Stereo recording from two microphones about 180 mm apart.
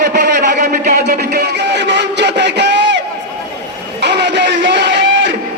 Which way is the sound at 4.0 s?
70° right (ahead or behind).